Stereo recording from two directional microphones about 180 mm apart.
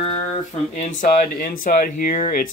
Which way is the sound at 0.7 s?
45° left (ahead or behind).